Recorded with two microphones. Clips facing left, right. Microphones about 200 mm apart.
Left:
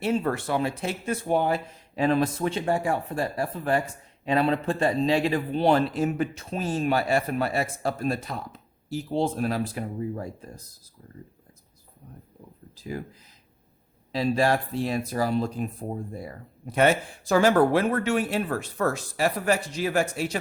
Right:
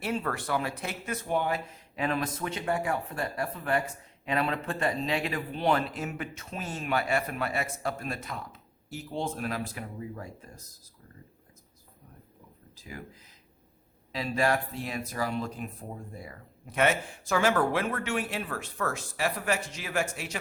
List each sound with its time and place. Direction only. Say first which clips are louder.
0.0 s speech: left 6 dB; 25° left (ahead or behind)
12.7 s a sound: left 10 dB; 35° left (ahead or behind)
14.1 s speech: left 5 dB; 30° left (ahead or behind)